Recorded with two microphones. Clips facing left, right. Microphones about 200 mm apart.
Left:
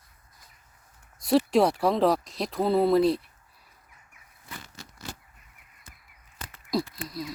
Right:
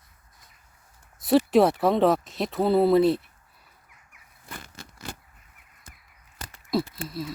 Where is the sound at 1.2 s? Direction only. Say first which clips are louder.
Right 2 dB; centre (ahead or behind).